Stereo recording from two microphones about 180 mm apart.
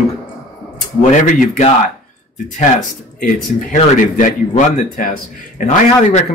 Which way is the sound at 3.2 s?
45° left (ahead or behind).